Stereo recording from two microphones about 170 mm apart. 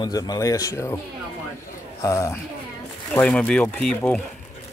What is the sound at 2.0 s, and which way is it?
Speech, 20° left (ahead or behind).